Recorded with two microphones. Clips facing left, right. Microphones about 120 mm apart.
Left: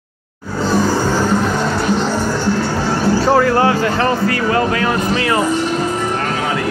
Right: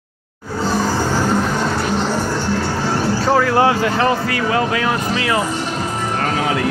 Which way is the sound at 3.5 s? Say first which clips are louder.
Left 1 dB; 15° right (ahead or behind).